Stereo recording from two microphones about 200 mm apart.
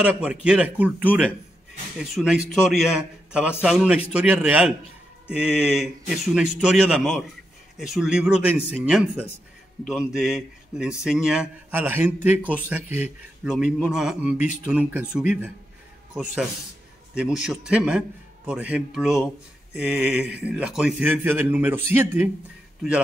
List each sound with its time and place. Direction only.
0.0 s a man's voice: 5° right (ahead or behind)
17.4 s a man's voice: 5° right (ahead or behind)